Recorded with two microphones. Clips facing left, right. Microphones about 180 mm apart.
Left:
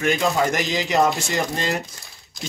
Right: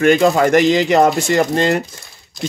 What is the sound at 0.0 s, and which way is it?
Speech, 60° right (ahead or behind).